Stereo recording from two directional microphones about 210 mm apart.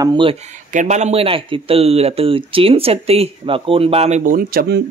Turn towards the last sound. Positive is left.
turn(degrees=-45)  # may be behind; listen again after turning